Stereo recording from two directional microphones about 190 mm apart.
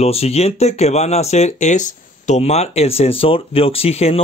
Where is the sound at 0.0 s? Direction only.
30° left (ahead or behind).